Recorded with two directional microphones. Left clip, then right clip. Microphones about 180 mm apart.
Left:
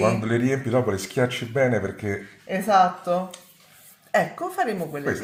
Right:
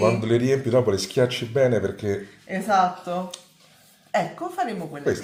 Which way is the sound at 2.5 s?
55° left (ahead or behind).